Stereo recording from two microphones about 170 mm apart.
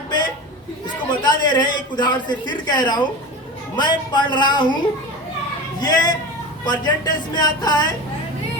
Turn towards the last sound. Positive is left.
turn(degrees=25)  # may be behind; listen again after turning